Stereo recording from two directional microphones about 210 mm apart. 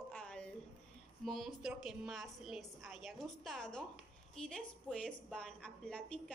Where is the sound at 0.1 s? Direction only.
5° left (ahead or behind).